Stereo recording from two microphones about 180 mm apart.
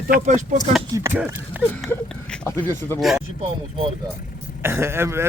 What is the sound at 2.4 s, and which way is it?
Speech, 15° left (ahead or behind).